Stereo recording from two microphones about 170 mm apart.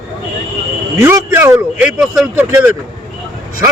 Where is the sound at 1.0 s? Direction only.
15° right (ahead or behind).